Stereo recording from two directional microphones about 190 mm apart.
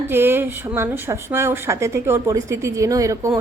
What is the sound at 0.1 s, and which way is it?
Speech, 10° right (ahead or behind).